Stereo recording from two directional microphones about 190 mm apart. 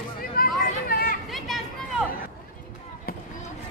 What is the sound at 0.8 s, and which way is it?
Chatter, 50° left (ahead or behind).